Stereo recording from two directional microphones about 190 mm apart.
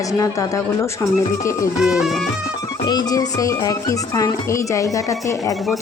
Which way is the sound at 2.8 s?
20° left (ahead or behind).